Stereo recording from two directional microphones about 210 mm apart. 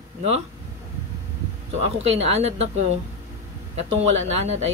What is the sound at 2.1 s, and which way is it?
Speech, 30° right (ahead or behind).